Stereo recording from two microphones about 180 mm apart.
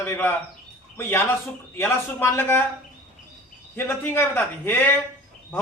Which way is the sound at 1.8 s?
15° left (ahead or behind).